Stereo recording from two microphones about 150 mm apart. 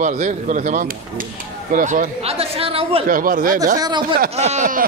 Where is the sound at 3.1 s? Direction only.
70° right (ahead or behind).